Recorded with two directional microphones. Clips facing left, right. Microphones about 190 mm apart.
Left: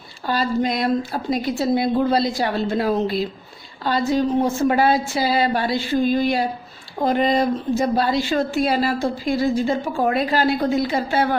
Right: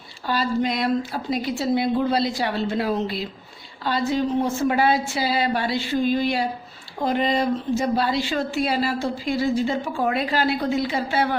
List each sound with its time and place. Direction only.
0.3 s speech: 45° left (ahead or behind)